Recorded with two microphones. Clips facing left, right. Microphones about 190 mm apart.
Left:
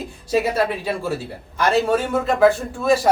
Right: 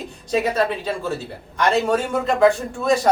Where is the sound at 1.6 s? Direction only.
5° left (ahead or behind).